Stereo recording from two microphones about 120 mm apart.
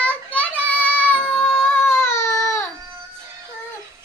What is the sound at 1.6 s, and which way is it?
Baby cry, 20° left (ahead or behind).